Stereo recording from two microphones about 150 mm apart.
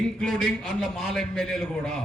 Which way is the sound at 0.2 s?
5° left (ahead or behind).